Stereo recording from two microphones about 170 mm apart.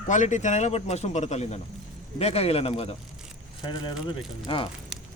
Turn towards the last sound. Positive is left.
turn(degrees=30)  # may be behind; listen again after turning